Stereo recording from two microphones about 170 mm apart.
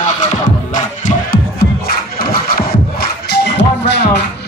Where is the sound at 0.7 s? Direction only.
50° left (ahead or behind).